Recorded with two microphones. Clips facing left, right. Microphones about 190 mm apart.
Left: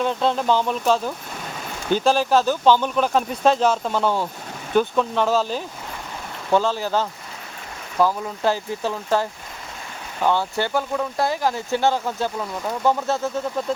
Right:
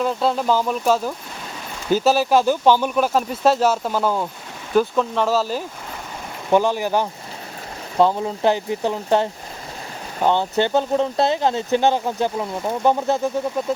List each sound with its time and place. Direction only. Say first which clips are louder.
0.0 s speech: right 1 dB; 5° right (ahead or behind)
7.9 s speech: right 3 dB; 25° right (ahead or behind)